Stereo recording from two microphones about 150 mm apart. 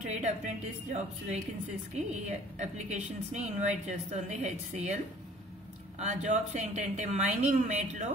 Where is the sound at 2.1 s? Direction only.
50° right (ahead or behind).